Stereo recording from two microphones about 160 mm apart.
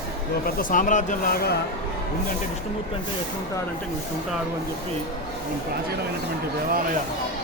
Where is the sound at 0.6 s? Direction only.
55° left (ahead or behind).